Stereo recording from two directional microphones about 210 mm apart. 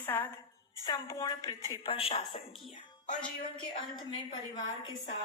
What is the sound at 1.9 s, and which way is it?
Speech, 25° left (ahead or behind).